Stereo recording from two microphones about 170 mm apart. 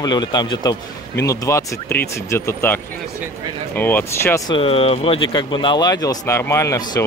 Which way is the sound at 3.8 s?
10° left (ahead or behind).